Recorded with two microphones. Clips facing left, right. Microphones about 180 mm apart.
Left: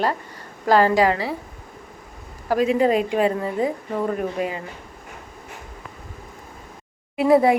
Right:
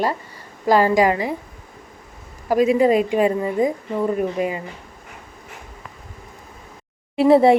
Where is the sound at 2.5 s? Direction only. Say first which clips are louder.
Right 3 dB; 10° right (ahead or behind).